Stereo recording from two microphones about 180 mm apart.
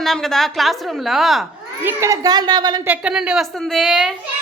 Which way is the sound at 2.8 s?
5° right (ahead or behind).